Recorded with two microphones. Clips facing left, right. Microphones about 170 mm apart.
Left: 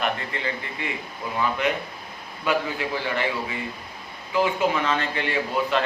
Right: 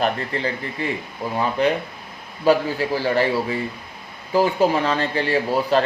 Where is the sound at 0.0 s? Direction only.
35° right (ahead or behind).